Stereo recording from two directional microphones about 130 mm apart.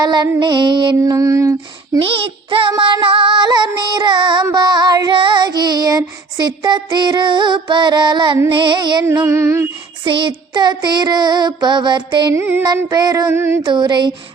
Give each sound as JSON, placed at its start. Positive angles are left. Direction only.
{"t": 0.0, "sound": "child singing", "side_deg": -35}
{"t": 2.0, "sound": "child singing", "side_deg": -45}
{"t": 9.0, "sound": "child singing", "side_deg": -20}
{"t": 10.0, "sound": "child singing", "side_deg": -40}
{"t": 12.3, "sound": "music", "side_deg": -15}
{"t": 12.6, "sound": "child singing", "side_deg": -30}
{"t": 13.6, "sound": "child singing", "side_deg": -35}